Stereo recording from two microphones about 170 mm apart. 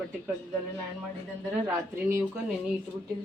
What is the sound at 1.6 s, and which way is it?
Speech, 10° right (ahead or behind).